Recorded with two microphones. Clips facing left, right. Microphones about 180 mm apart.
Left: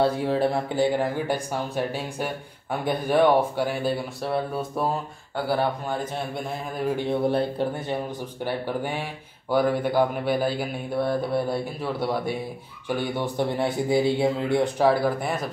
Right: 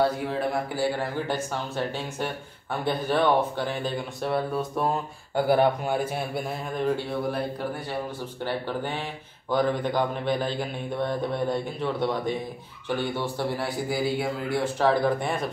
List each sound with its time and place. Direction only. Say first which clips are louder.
0.0 s a sound: left 3 dB; 30° left (ahead or behind)
0.7 s speech: left 4 dB; 15° left (ahead or behind)
5.3 s a man's voice: right 4 dB; 15° right (ahead or behind)
6.8 s speech: left 2 dB; 15° left (ahead or behind)
7.2 s a man's voice: left 5 dB; 30° left (ahead or behind)
8.5 s a man's voice: left 2 dB; 10° left (ahead or behind)
14.8 s speech: right 2 dB; 10° left (ahead or behind)